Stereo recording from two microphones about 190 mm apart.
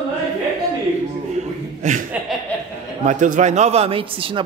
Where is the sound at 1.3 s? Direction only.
40° right (ahead or behind).